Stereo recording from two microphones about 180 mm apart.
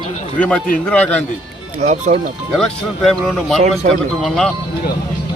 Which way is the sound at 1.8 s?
40° right (ahead or behind).